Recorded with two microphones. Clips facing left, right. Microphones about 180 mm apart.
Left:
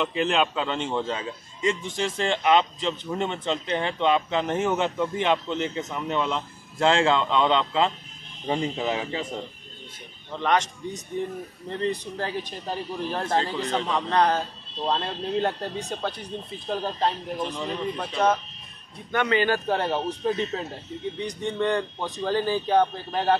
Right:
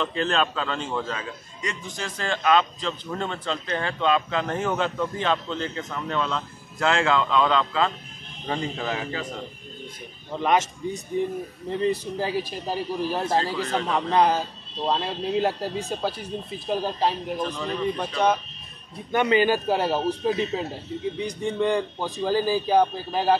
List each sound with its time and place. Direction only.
0.0 s a man's voice: 15° left (ahead or behind)
10.3 s a man's voice: 10° right (ahead or behind)
19.1 s a man's voice: 15° right (ahead or behind)